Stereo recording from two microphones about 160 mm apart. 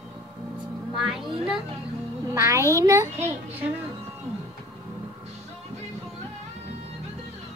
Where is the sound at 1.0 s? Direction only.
Centre (ahead or behind).